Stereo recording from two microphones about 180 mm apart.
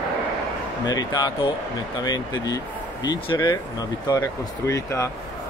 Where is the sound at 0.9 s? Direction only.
20° left (ahead or behind).